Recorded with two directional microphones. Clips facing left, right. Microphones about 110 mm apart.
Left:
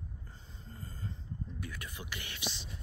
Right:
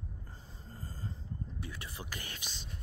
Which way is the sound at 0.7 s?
30° right (ahead or behind).